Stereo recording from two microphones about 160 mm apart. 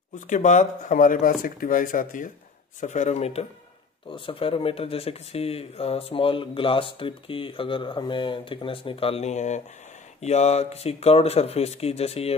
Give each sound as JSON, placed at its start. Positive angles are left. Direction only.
{"t": 0.3, "sound": "speech", "side_deg": 50}